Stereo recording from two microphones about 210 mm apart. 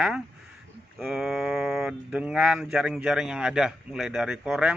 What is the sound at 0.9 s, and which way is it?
Speech, centre (ahead or behind).